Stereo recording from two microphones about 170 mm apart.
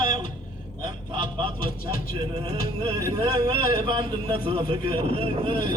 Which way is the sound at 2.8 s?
30° right (ahead or behind).